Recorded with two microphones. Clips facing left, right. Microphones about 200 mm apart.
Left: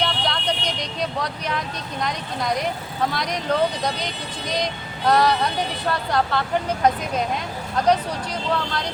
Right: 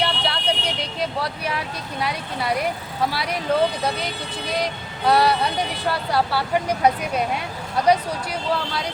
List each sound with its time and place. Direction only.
0.0 s vehicle: 5° right (ahead or behind)
3.1 s speech: 5° right (ahead or behind)